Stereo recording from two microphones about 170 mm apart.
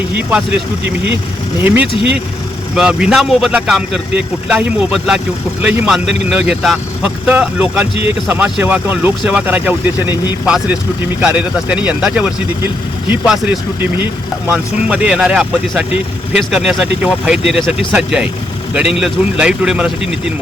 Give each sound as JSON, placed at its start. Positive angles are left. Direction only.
{"t": 1.6, "sound": "speech", "side_deg": -10}